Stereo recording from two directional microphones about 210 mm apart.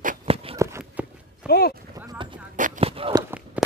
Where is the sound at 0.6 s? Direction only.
10° right (ahead or behind).